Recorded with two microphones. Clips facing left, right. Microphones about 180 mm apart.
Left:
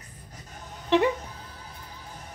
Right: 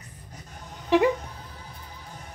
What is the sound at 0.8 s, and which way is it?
Speech, 5° right (ahead or behind).